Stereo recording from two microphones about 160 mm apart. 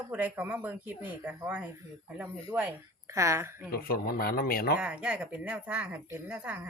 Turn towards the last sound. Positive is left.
turn(degrees=-5)  # may be behind; listen again after turning